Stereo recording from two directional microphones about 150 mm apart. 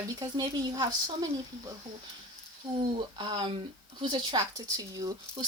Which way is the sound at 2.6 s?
25° right (ahead or behind).